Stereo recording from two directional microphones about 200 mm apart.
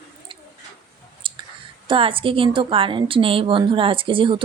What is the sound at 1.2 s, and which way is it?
Clicking, 25° right (ahead or behind).